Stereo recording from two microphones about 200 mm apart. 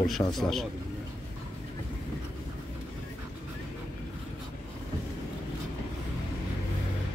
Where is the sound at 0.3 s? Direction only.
Centre (ahead or behind).